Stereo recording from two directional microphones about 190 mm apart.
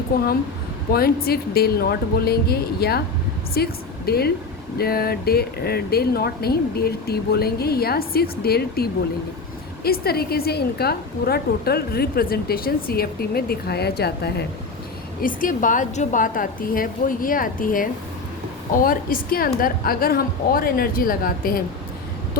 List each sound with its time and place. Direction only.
0.9 s a woman's voice: 55° left (ahead or behind)
15.2 s a woman's voice: 45° left (ahead or behind)